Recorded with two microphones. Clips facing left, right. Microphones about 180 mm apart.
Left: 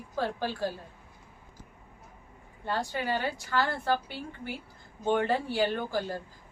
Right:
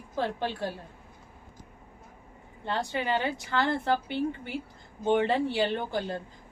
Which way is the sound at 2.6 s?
20° right (ahead or behind).